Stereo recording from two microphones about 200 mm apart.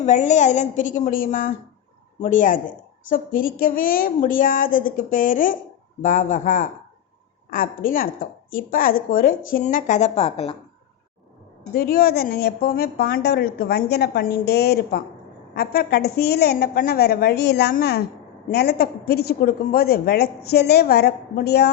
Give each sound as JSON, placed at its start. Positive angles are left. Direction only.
{"t": 0.0, "sound": "a woman's voice", "side_deg": 35}
{"t": 11.7, "sound": "a woman's voice", "side_deg": 50}